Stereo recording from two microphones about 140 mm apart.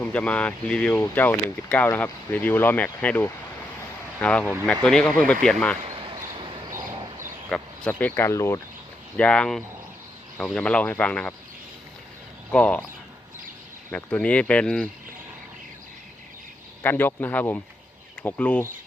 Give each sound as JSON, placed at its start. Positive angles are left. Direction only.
{"t": 0.0, "sound": "speech", "side_deg": 10}
{"t": 7.5, "sound": "speech", "side_deg": 10}
{"t": 9.1, "sound": "speech", "side_deg": 5}
{"t": 12.5, "sound": "speech", "side_deg": 10}
{"t": 13.9, "sound": "speech", "side_deg": 10}
{"t": 16.8, "sound": "speech", "side_deg": 15}